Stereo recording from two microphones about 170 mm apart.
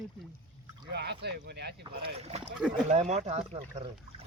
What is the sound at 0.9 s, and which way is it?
Speech, 80° right.